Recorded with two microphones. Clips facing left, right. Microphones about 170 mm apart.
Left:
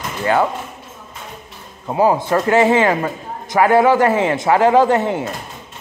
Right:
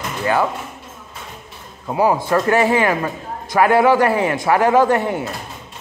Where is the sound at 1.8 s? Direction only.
20° left (ahead or behind).